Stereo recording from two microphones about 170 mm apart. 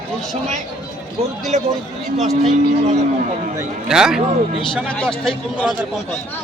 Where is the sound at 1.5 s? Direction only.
45° right (ahead or behind).